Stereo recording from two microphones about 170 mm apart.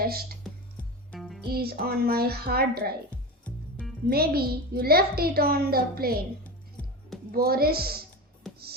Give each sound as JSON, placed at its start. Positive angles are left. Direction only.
{"t": 0.4, "sound": "music", "side_deg": 5}
{"t": 1.5, "sound": "a woman's voice", "side_deg": -65}
{"t": 3.4, "sound": "music", "side_deg": 5}
{"t": 4.1, "sound": "a woman's voice", "side_deg": -65}
{"t": 6.4, "sound": "music", "side_deg": 10}
{"t": 7.3, "sound": "a woman's voice", "side_deg": -60}
{"t": 8.4, "sound": "music", "side_deg": 0}